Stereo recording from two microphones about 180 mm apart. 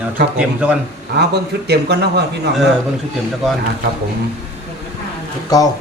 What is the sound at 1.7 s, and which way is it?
Speech, 65° right (ahead or behind).